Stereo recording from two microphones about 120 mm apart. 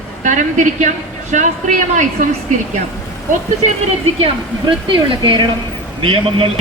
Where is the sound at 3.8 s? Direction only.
50° right (ahead or behind).